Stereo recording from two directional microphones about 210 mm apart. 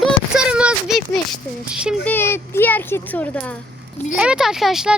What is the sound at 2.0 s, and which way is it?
Speech, 10° left (ahead or behind).